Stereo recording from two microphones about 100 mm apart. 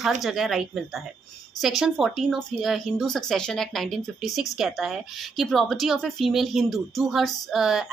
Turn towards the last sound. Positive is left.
turn(degrees=-5)  # may be behind; listen again after turning